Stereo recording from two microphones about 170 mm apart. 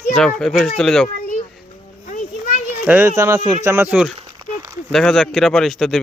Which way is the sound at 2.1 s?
55° left (ahead or behind).